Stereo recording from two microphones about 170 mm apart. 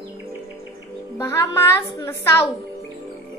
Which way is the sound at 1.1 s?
15° left (ahead or behind).